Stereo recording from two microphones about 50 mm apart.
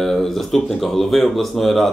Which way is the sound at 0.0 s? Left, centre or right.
Centre.